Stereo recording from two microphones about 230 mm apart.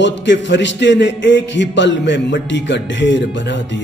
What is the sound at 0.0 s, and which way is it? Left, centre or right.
A man's voice, left.